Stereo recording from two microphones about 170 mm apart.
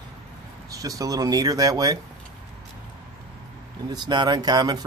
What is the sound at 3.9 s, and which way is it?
Speech, 25° right (ahead or behind).